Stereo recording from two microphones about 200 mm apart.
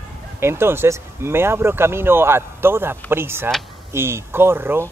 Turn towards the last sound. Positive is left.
turn(degrees=-10)  # may be behind; listen again after turning